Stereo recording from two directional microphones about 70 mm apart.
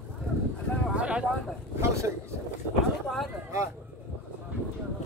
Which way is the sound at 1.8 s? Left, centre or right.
Right.